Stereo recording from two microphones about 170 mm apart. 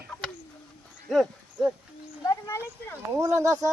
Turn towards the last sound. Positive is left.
turn(degrees=-20)  # may be behind; listen again after turning